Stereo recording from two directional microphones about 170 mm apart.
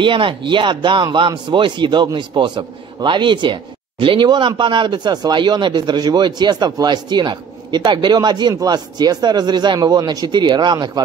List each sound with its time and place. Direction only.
0.0 s speech: 30° right (ahead or behind)